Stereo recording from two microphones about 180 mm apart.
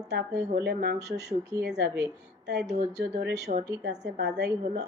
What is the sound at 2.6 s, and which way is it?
A woman's voice, 40° right (ahead or behind).